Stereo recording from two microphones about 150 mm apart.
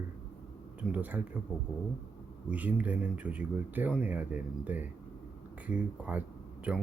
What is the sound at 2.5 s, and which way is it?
Speech, 10° right (ahead or behind).